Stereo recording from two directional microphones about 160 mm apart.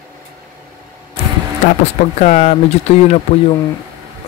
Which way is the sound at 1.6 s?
50° left (ahead or behind).